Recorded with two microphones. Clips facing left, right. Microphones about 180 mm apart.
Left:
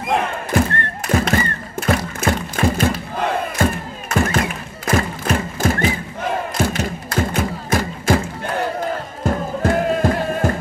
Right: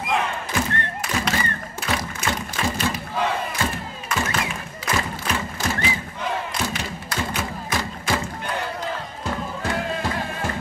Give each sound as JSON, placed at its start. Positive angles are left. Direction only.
{"t": 0.1, "sound": "thump", "side_deg": 50}
{"t": 9.2, "sound": "music", "side_deg": 50}